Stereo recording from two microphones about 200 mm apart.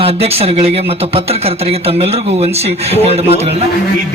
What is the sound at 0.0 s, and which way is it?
Speech, 30° right (ahead or behind).